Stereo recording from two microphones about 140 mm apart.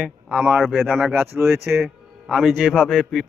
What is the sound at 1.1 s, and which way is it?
Speech, 15° right (ahead or behind).